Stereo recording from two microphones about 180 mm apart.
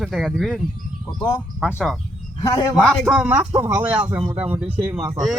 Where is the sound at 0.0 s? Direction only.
5° right (ahead or behind).